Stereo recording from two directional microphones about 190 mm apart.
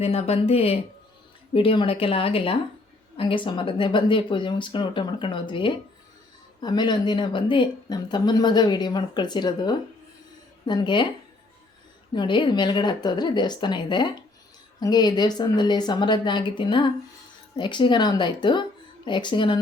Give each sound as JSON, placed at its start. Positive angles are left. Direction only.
{"t": 0.0, "sound": "a woman's voice", "side_deg": 35}
{"t": 12.1, "sound": "a woman's voice", "side_deg": 25}